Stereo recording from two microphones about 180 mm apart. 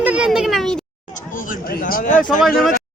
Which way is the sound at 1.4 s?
50° left (ahead or behind).